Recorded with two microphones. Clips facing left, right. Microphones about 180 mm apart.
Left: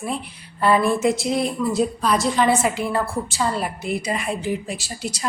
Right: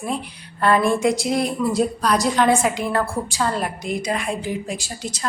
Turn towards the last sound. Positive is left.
turn(degrees=10)  # may be behind; listen again after turning